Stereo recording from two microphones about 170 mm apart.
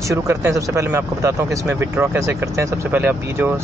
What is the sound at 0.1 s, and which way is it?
Speech, 15° right (ahead or behind).